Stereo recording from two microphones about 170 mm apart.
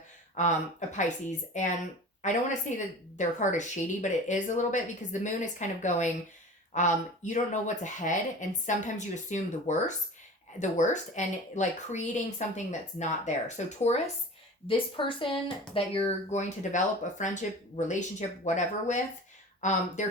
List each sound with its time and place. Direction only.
0.3 s speech: 45° left (ahead or behind)
14.7 s speech: 30° left (ahead or behind)